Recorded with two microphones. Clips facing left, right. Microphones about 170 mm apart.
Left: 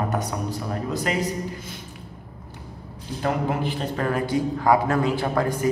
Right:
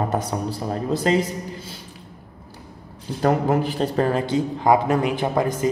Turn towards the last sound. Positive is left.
turn(degrees=-20)  # may be behind; listen again after turning